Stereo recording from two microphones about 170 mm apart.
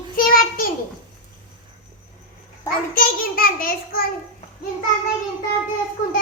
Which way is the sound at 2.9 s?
55° left (ahead or behind).